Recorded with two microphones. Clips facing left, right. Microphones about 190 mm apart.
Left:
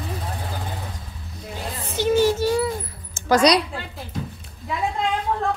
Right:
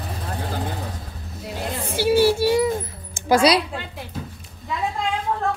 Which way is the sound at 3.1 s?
10° right (ahead or behind).